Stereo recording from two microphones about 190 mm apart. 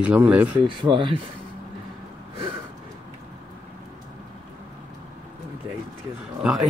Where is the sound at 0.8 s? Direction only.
25° right (ahead or behind).